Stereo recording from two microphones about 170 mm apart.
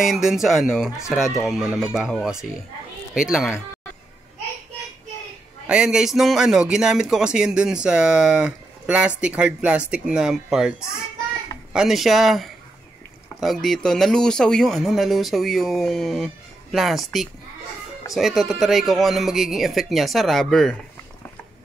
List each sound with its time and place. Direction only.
0.0 s speech: 5° right (ahead or behind)
5.7 s speech: 5° right (ahead or behind)